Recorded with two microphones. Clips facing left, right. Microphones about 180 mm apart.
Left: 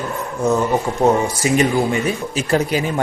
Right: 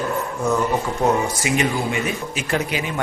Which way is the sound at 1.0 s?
25° left (ahead or behind).